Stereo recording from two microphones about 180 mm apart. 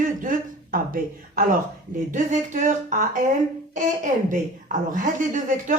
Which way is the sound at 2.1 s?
45° right (ahead or behind).